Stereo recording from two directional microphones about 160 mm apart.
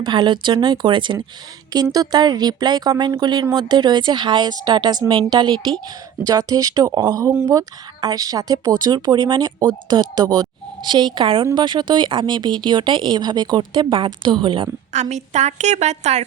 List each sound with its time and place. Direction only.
0.0 s speech: 30° right (ahead or behind)
15.1 s a woman's voice: 45° right (ahead or behind)